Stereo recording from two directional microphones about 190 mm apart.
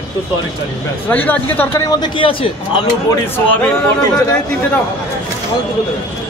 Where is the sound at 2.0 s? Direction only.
25° left (ahead or behind).